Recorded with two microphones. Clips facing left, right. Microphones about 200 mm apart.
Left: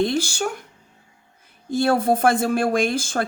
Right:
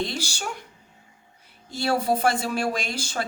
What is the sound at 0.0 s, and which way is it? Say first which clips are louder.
Speech: left 8 dB; 50° left (ahead or behind).